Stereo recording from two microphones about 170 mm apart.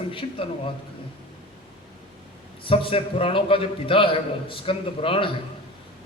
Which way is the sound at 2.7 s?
30° left (ahead or behind).